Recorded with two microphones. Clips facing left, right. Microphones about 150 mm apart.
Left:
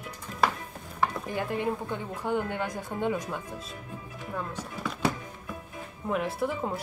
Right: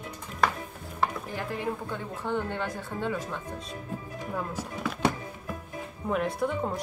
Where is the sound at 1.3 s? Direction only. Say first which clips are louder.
Left 3 dB; 20° left (ahead or behind).